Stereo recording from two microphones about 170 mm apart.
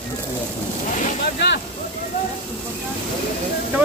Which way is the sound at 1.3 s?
90° left.